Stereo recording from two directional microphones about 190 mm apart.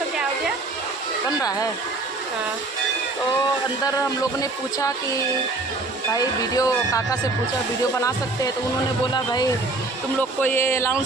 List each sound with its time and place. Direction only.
1.4 s speech: 20° left (ahead or behind)
3.8 s speech: 20° left (ahead or behind)
6.1 s speech: 20° left (ahead or behind)
10.2 s speech: 10° left (ahead or behind)